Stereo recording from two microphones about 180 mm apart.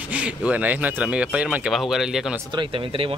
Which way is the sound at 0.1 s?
5° right (ahead or behind).